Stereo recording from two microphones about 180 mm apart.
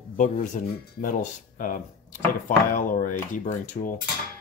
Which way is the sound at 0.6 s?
45° left (ahead or behind).